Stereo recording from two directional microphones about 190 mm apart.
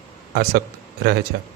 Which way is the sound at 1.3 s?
60° right (ahead or behind).